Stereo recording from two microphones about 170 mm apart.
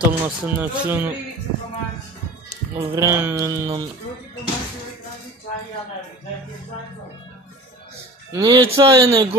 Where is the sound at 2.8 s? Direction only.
15° right (ahead or behind).